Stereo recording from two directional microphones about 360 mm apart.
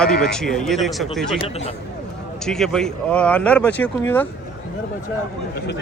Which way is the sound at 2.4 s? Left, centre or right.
Centre.